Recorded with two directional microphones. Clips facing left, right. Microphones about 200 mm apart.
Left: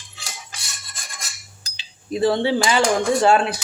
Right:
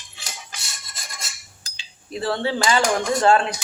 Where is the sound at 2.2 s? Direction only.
15° left (ahead or behind).